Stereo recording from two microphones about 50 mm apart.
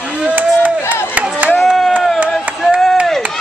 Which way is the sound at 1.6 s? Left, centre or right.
Centre.